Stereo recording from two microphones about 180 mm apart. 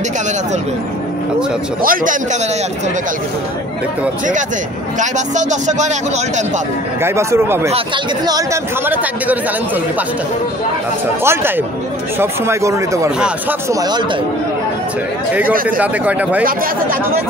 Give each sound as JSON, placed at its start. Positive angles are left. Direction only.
{"t": 1.8, "sound": "a man's voice", "side_deg": -50}
{"t": 4.9, "sound": "a man's voice", "side_deg": -40}
{"t": 7.0, "sound": "speech", "side_deg": -15}
{"t": 7.7, "sound": "speech", "side_deg": -25}
{"t": 11.2, "sound": "speech", "side_deg": -10}
{"t": 15.8, "sound": "speech", "side_deg": -10}